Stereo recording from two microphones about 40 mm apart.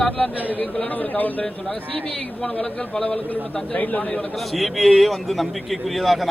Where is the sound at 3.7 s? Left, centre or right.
Left.